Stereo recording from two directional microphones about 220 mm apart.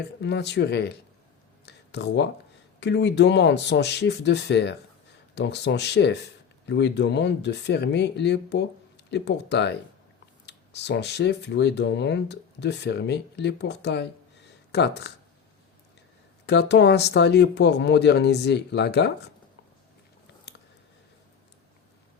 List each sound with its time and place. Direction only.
0.2 s speech: 50° left (ahead or behind)
1.6 s a sound: 50° left (ahead or behind)
2.8 s speech: 50° left (ahead or behind)
16.5 s speech: 50° left (ahead or behind)